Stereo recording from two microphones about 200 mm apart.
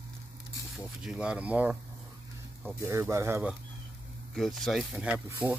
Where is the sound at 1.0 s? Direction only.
5° right (ahead or behind).